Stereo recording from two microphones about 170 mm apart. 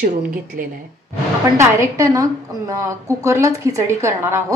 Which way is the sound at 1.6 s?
15° right (ahead or behind).